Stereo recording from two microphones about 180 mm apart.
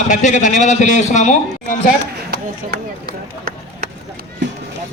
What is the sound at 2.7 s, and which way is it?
Chop, 60° right (ahead or behind).